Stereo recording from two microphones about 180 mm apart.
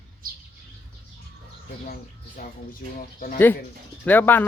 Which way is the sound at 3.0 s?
50° left (ahead or behind).